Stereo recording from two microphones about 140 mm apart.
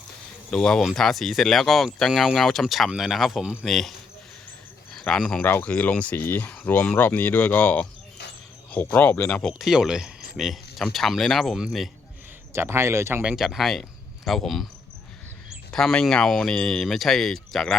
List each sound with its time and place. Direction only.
0.5 s speech: 5° left (ahead or behind)
4.9 s speech: 5° left (ahead or behind)
9.5 s speech: centre (ahead or behind)
12.5 s speech: 20° right (ahead or behind)
13.2 s speech: centre (ahead or behind)
15.7 s speech: 5° left (ahead or behind)